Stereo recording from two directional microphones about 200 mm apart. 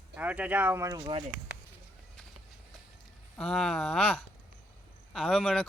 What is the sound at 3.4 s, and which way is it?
Speech, centre (ahead or behind).